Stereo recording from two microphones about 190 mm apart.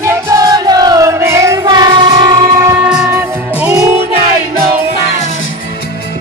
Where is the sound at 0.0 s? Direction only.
15° right (ahead or behind).